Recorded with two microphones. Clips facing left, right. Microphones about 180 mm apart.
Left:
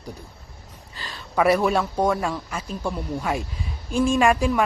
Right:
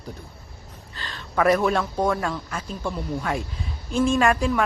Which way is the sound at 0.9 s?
10° left (ahead or behind).